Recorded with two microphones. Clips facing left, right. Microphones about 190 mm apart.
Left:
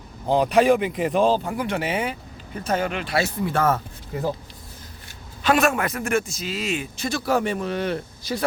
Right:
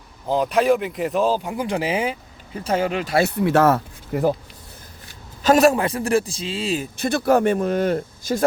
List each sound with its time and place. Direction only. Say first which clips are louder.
0.3 s speech: left 1 dB; centre (ahead or behind)
1.6 s a man's voice: right 3 dB; 30° right (ahead or behind)
3.2 s speech: right 7 dB; 70° right (ahead or behind)
5.4 s a man's voice: right 5 dB; 40° right (ahead or behind)
7.3 s speech: right 6 dB; 50° right (ahead or behind)